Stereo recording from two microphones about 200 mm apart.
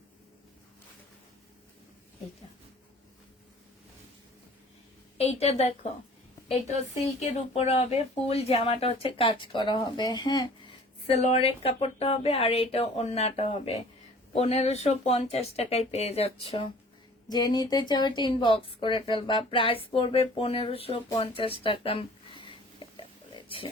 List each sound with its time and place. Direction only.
5.1 s speech: 30° left (ahead or behind)
7.3 s speech: 30° left (ahead or behind)
11.0 s speech: 30° left (ahead or behind)
21.2 s a sound: 25° left (ahead or behind)